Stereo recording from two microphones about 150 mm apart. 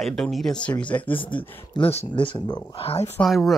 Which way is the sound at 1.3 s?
15° left (ahead or behind).